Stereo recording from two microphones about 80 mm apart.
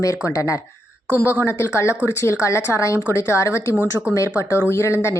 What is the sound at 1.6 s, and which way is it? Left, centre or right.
A woman's voice, left.